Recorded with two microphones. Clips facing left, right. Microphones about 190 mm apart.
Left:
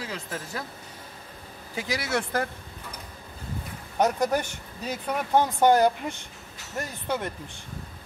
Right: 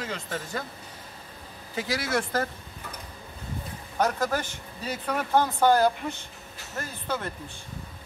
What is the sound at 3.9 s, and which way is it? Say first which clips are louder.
Speech: left 2 dB; 15° left (ahead or behind).